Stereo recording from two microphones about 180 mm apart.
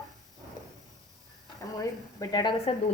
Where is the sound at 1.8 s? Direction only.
20° left (ahead or behind).